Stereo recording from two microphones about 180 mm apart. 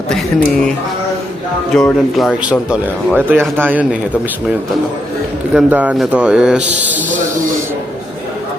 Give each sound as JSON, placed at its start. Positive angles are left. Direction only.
{"t": 0.1, "sound": "a man's voice", "side_deg": 5}
{"t": 1.7, "sound": "speech", "side_deg": 0}
{"t": 5.5, "sound": "a man's voice", "side_deg": -10}